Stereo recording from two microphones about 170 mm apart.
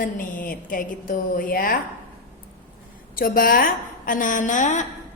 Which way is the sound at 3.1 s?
55° left (ahead or behind).